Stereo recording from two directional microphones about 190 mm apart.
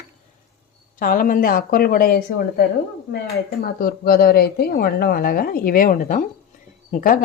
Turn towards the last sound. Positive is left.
turn(degrees=45)  # may be behind; listen again after turning